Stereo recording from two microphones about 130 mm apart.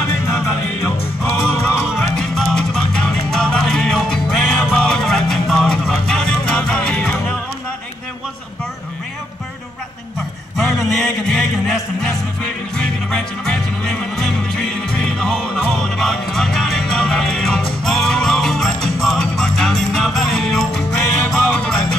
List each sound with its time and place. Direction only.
0.0 s music: 20° left (ahead or behind)
2.0 s music: 5° left (ahead or behind)
10.6 s music: 5° left (ahead or behind)